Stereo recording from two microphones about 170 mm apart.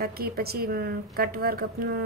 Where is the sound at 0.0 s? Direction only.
65° right (ahead or behind).